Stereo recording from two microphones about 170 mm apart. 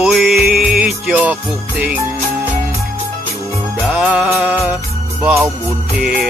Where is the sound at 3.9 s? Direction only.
5° right (ahead or behind).